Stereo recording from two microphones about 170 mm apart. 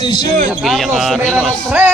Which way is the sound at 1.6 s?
10° right (ahead or behind).